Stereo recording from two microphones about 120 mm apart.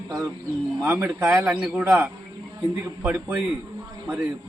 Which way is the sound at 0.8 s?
20° right (ahead or behind).